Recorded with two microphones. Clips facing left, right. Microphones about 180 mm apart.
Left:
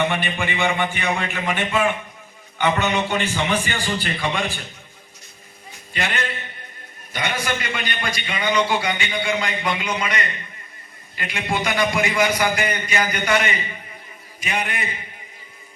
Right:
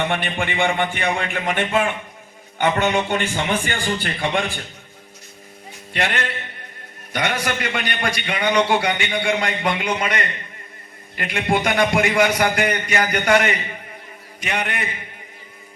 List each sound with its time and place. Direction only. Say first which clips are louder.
0.1 s a man's voice: right 1 dB; 55° right (ahead or behind)
5.9 s a man's voice: right 2 dB; 65° right (ahead or behind)